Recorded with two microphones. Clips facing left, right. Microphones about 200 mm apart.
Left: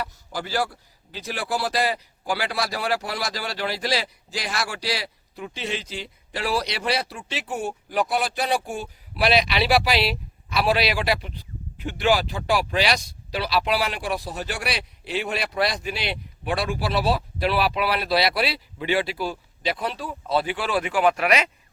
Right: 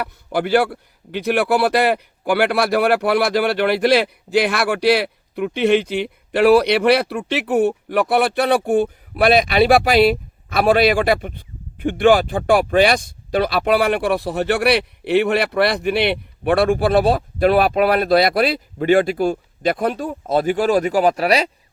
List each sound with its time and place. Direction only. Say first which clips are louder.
0.0 s a man's voice: right 9 dB; 60° right (ahead or behind); by 21.5 s 35° right (ahead or behind)